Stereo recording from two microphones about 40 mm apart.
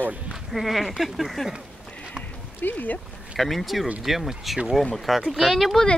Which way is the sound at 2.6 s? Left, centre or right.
Left.